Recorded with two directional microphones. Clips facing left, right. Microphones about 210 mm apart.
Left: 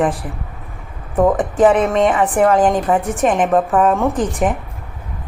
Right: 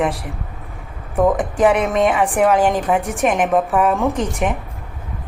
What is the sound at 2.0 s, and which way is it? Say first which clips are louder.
Speech: left 2 dB; 10° right (ahead or behind).